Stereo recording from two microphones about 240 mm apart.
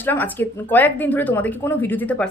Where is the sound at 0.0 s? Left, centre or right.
Centre.